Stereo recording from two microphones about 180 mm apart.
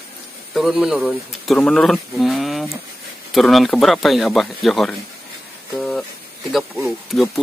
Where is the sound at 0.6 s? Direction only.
Centre (ahead or behind).